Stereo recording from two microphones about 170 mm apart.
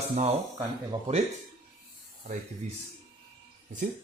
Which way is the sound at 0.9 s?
35° right (ahead or behind).